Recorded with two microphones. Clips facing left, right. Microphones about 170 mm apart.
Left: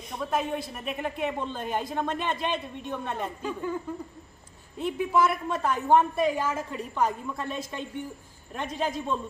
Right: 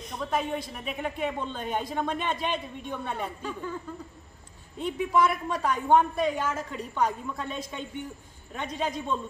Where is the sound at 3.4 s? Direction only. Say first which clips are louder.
Left 3 dB; 10° left (ahead or behind).